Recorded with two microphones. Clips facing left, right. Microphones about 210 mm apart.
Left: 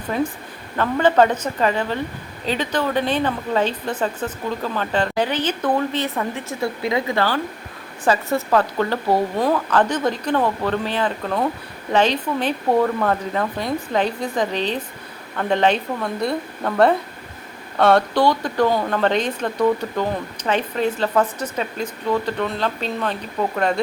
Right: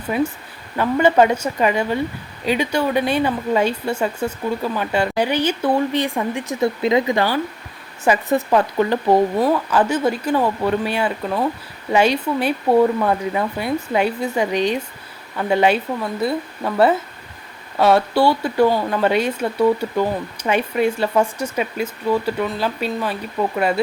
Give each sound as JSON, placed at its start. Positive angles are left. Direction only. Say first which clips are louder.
{"t": 0.1, "sound": "a woman's voice", "louder": "right 2 dB", "side_deg": -10}